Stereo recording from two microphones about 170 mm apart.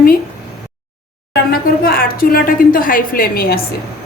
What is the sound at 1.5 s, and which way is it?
A woman's voice, 60° left (ahead or behind).